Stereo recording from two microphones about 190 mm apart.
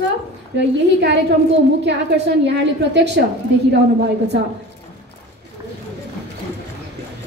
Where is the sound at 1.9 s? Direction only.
60° right (ahead or behind).